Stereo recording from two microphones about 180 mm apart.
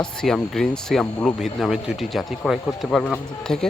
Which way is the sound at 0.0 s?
5° left (ahead or behind).